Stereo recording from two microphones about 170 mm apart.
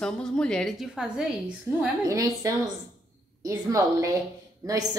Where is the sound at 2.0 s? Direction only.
20° right (ahead or behind).